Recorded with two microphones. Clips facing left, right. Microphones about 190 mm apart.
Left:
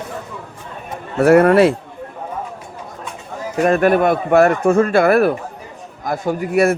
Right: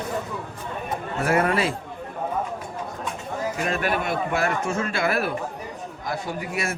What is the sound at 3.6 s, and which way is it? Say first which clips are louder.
A man's voice: left 14 dB; 50° left (ahead or behind).